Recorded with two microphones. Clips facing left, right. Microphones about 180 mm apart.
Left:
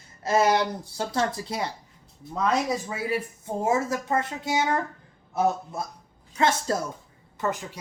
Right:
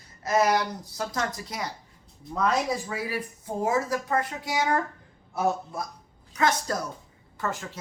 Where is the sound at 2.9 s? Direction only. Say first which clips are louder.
Left 3 dB; 25° left (ahead or behind).